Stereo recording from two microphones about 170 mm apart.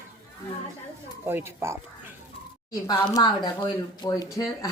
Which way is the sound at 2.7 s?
20° left (ahead or behind).